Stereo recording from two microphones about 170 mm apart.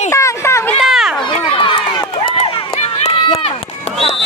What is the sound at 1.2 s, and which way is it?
Speech, 30° left (ahead or behind).